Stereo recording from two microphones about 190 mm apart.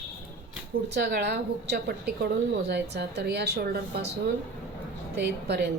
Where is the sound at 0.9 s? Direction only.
60° right (ahead or behind).